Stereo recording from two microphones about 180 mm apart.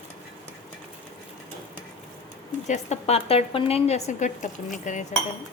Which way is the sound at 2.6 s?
40° left (ahead or behind).